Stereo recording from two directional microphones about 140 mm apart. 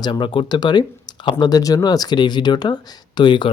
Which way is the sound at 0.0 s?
35° left (ahead or behind).